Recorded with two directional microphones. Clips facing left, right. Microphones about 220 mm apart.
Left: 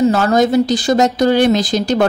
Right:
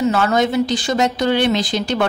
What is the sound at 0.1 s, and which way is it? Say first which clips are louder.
Speech: left 4 dB; 40° left (ahead or behind).